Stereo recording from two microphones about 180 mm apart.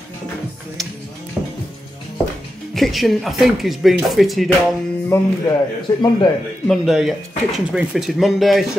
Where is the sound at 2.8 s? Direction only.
Centre (ahead or behind).